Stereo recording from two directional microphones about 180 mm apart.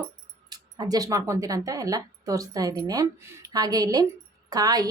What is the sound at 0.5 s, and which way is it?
Speech, 20° right (ahead or behind).